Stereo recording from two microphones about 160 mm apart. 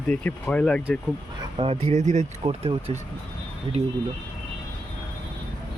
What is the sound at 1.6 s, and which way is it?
Speech, 40° right (ahead or behind).